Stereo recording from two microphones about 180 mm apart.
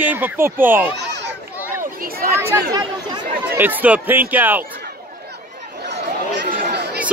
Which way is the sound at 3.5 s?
10° right (ahead or behind).